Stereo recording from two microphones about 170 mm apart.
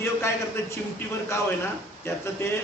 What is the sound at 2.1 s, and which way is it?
Speech, 15° left (ahead or behind).